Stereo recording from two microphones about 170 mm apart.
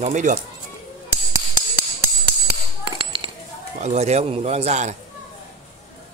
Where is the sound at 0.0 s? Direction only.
45° right (ahead or behind).